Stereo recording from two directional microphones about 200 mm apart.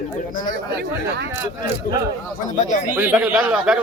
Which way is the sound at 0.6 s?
55° right (ahead or behind).